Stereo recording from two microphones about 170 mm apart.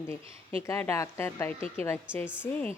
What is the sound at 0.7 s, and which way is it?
Speech, 15° left (ahead or behind).